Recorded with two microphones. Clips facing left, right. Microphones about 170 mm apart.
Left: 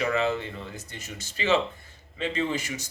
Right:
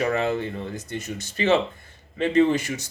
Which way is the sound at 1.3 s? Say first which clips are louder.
Right 4 dB; 55° right (ahead or behind).